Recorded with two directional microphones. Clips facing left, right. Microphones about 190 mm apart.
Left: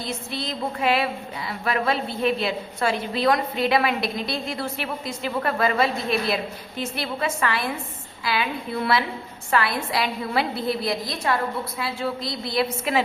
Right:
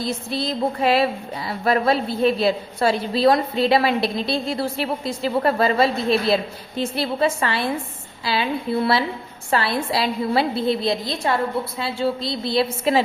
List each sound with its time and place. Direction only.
0.0 s a woman's voice: 35° right (ahead or behind)